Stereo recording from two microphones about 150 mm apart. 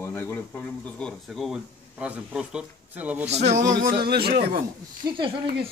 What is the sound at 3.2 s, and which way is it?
Speech, 45° right (ahead or behind).